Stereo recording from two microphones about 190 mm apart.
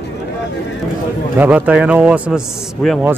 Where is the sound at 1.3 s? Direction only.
10° right (ahead or behind).